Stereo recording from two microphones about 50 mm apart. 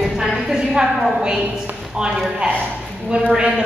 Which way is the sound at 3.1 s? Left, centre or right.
Centre.